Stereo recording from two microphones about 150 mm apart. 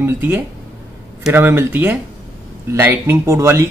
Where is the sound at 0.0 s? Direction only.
15° right (ahead or behind).